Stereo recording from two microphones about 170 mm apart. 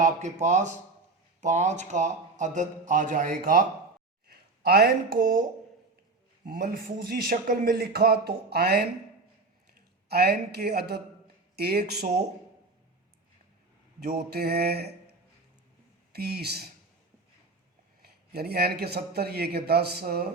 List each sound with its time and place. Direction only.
0.0 s a man's voice: 45° right (ahead or behind)
4.3 s speech: 65° right (ahead or behind)
6.4 s speech: 55° right (ahead or behind)
10.1 s a man's voice: 70° right (ahead or behind)
14.0 s speech: 65° right (ahead or behind)
16.1 s a man's voice: 70° right (ahead or behind)
18.0 s a man's voice: 65° right (ahead or behind)